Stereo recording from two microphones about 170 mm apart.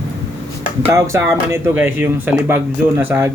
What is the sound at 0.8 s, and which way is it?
Speech, 15° right (ahead or behind).